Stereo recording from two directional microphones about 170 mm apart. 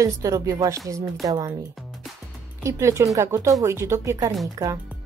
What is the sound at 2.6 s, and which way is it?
A woman's voice, 15° right (ahead or behind).